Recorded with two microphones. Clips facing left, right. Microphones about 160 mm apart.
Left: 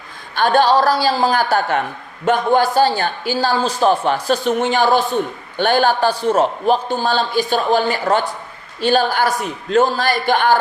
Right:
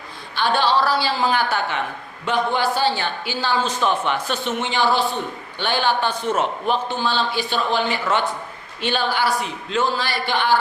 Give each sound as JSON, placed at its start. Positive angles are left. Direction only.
{"t": 0.3, "sound": "a man's voice", "side_deg": 45}